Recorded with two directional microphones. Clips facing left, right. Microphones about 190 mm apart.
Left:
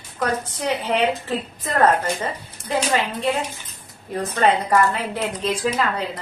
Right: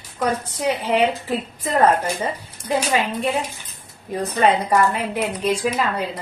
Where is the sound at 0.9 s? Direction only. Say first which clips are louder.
Right 3 dB; 10° right (ahead or behind).